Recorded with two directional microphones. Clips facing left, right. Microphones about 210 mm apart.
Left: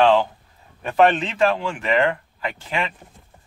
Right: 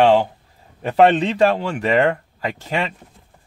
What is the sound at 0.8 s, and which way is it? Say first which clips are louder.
Speech: right 3 dB; 30° right (ahead or behind).